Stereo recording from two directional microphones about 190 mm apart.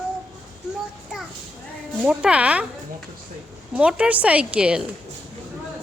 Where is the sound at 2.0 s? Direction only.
5° right (ahead or behind).